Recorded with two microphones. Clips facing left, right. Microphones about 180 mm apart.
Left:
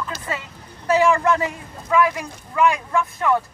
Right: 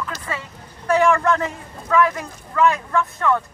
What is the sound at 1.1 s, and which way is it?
Speech, 15° left (ahead or behind).